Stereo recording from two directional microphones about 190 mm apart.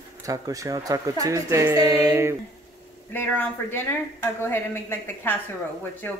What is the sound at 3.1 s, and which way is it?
A woman's voice, 10° left (ahead or behind).